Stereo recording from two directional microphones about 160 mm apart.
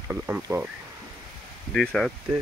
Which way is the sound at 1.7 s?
5° left (ahead or behind).